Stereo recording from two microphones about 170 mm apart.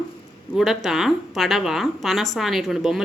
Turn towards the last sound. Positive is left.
turn(degrees=0)  # may be behind; listen again after turning